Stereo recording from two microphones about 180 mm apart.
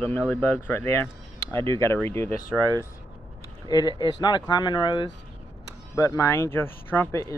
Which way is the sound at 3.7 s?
25° left (ahead or behind).